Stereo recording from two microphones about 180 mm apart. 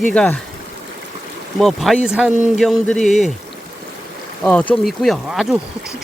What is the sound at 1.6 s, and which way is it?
Speech, centre (ahead or behind).